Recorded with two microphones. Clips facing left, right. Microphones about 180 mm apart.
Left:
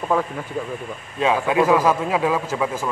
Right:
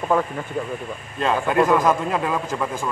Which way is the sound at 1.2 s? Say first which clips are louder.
Left 1 dB; 5° left (ahead or behind).